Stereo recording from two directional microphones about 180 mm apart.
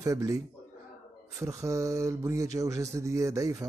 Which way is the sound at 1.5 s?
15° right (ahead or behind).